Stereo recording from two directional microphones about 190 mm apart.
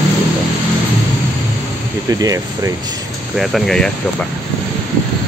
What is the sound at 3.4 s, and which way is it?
Speech, centre (ahead or behind).